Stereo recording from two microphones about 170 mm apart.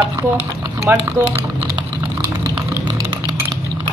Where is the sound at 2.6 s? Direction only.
10° right (ahead or behind).